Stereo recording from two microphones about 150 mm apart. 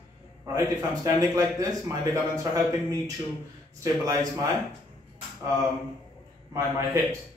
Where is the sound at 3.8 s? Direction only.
25° right (ahead or behind).